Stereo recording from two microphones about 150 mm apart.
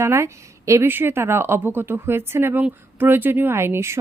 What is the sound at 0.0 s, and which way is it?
A woman's voice, 20° right (ahead or behind).